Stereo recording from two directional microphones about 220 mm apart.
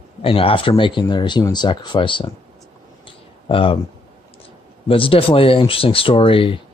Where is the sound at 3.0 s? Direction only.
25° left (ahead or behind).